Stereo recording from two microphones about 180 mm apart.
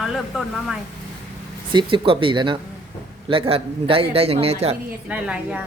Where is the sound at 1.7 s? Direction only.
25° right (ahead or behind).